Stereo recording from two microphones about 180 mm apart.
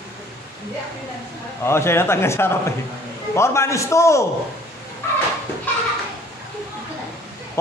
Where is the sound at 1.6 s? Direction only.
15° left (ahead or behind).